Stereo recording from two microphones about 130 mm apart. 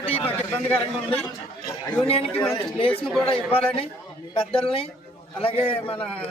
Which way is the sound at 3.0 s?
5° left (ahead or behind).